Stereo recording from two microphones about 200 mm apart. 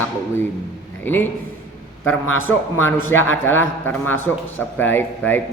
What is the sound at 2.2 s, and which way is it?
Speech, 90° left.